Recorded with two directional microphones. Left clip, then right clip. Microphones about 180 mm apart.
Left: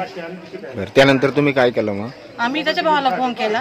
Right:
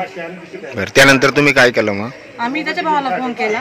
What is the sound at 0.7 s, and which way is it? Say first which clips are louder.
A man's voice: right 4 dB; centre (ahead or behind).